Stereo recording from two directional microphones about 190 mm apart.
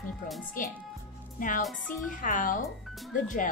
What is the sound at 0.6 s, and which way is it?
Speech, 45° left (ahead or behind).